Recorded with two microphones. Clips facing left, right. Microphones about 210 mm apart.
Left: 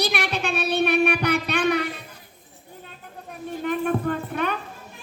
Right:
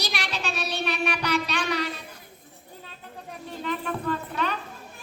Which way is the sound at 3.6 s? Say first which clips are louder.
Left 7 dB; 55° left (ahead or behind).